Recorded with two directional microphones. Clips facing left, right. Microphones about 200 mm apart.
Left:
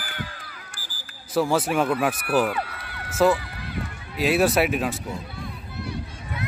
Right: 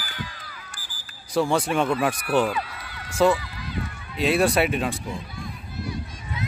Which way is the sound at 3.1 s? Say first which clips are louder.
Even; 5° left (ahead or behind).